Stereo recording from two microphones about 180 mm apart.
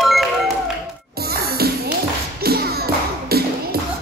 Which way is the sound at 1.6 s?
60° right (ahead or behind).